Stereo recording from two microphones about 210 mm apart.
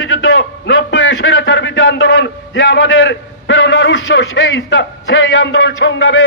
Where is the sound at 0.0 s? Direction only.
70° left (ahead or behind).